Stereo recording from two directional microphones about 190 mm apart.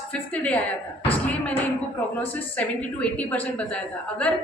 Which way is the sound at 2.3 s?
5° left (ahead or behind).